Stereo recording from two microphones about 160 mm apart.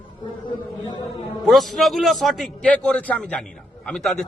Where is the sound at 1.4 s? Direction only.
Centre (ahead or behind).